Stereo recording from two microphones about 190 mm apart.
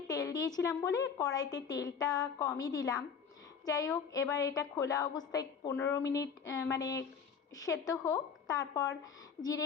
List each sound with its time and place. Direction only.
0.1 s a woman's voice: 20° left (ahead or behind)